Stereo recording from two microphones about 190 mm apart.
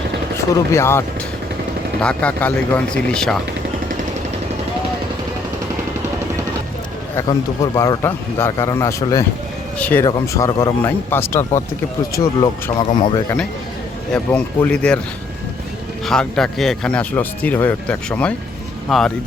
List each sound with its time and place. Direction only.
0.3 s speech: 15° left (ahead or behind)
7.2 s speech: 15° left (ahead or behind)
13.0 s speech: 25° left (ahead or behind)
14.1 s speech: 10° left (ahead or behind)
16.0 s speech: 5° left (ahead or behind)